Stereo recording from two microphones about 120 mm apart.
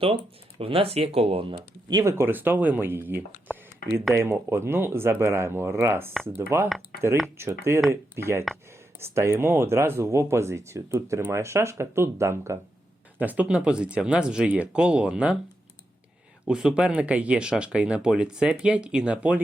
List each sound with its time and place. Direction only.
0.6 s speech: 50° right (ahead or behind)
1.9 s speech: 25° right (ahead or behind); by 15.4 s 10° right (ahead or behind)
16.5 s speech: 5° right (ahead or behind)